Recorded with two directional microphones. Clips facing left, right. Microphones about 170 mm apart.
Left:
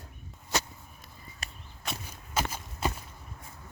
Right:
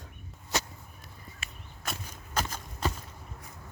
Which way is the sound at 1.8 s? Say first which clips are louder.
Even; 5° left (ahead or behind).